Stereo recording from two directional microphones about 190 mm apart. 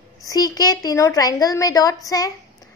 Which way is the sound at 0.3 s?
20° left (ahead or behind).